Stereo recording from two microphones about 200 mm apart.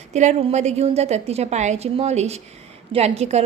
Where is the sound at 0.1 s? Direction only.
35° right (ahead or behind).